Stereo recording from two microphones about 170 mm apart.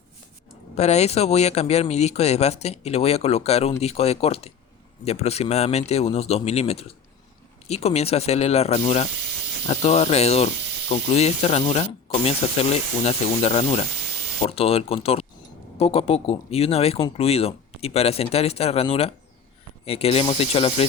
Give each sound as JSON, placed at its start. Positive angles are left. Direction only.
{"t": 0.8, "sound": "speech", "side_deg": 40}